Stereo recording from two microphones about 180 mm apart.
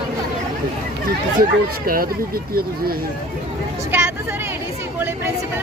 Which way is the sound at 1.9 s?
55° right (ahead or behind).